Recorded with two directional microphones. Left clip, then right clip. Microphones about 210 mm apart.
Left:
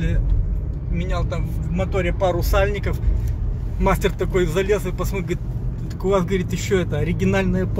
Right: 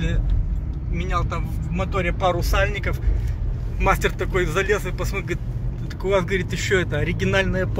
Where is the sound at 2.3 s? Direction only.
20° left (ahead or behind).